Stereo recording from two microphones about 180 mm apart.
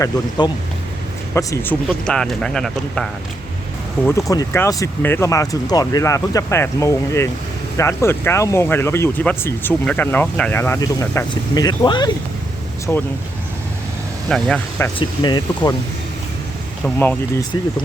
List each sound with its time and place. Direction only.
0.0 s speech: 25° left (ahead or behind)
2.0 s speech: 5° left (ahead or behind)
4.0 s speech: 15° left (ahead or behind)
12.9 s speech: 15° left (ahead or behind)
14.3 s speech: centre (ahead or behind)
14.9 s speech: 25° left (ahead or behind)
16.8 s speech: 5° left (ahead or behind)